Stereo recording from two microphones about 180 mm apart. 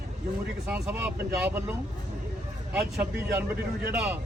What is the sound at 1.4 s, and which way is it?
Speech, 10° right (ahead or behind).